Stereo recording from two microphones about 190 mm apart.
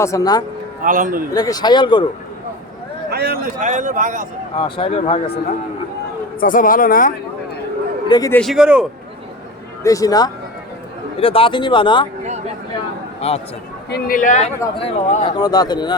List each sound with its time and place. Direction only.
0.0 s speech: 15° left (ahead or behind)
0.8 s speech: 45° right (ahead or behind)
1.3 s speech: 20° left (ahead or behind)
3.1 s speech: 55° right (ahead or behind)
4.5 s speech: 30° left (ahead or behind)
6.4 s speech: 45° left (ahead or behind)
8.0 s a man's voice: 20° left (ahead or behind)
8.3 s a man's voice: centre (ahead or behind)
9.8 s speech: 15° left (ahead or behind)
13.2 s speech: 30° left (ahead or behind)
13.9 s speech: 45° left (ahead or behind)
14.8 s speech: 30° left (ahead or behind)